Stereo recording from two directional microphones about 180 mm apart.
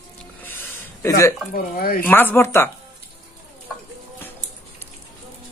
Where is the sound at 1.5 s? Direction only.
55° left (ahead or behind).